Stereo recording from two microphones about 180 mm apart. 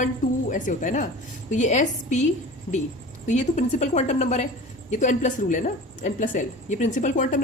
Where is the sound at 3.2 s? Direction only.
40° left (ahead or behind).